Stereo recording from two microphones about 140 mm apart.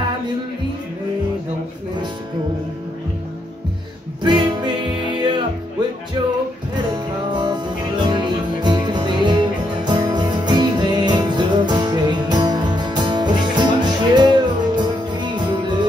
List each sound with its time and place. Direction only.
4.2 s music: 30° right (ahead or behind)